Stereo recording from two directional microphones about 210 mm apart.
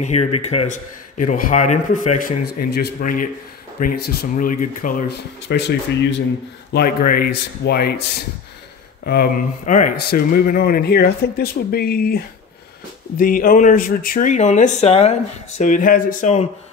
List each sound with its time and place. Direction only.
0.0 s speech: 30° left (ahead or behind); by 7.9 s 50° left (ahead or behind)
9.0 s speech: 45° left (ahead or behind)
13.2 s speech: 40° left (ahead or behind)